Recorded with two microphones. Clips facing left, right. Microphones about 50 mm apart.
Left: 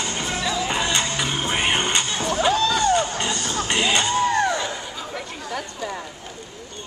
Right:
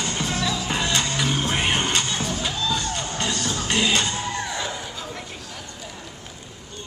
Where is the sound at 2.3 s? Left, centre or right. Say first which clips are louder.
Left 6 dB; left.